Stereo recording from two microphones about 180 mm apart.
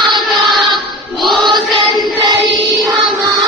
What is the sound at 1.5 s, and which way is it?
Choir, 25° right (ahead or behind).